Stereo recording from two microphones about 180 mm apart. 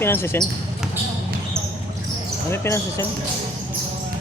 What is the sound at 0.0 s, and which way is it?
Speech, 10° left (ahead or behind).